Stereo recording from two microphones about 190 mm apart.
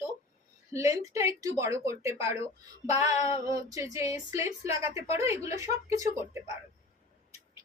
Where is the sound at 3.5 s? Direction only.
15° right (ahead or behind).